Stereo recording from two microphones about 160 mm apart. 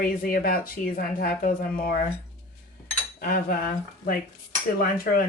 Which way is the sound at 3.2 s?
65° left (ahead or behind).